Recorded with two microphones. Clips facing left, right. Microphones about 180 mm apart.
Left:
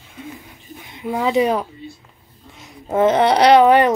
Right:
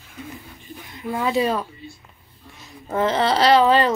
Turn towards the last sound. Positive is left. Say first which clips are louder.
# left 4 dB
turn(degrees=20)  # may be behind; listen again after turning